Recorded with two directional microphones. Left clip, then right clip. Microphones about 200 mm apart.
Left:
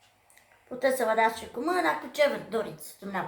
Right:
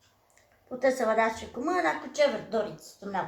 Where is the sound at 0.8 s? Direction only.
15° left (ahead or behind).